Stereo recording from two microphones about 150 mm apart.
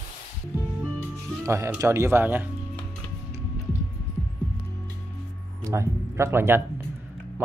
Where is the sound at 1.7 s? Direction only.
20° right (ahead or behind).